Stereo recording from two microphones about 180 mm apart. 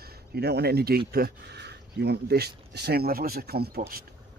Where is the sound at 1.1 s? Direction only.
65° right (ahead or behind).